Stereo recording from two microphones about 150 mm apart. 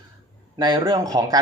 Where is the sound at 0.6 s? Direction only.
30° right (ahead or behind).